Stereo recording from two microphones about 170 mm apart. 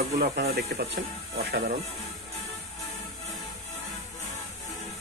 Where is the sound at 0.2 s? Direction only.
70° right (ahead or behind).